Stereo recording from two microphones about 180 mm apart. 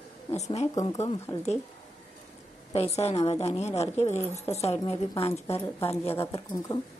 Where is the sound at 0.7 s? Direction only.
20° left (ahead or behind).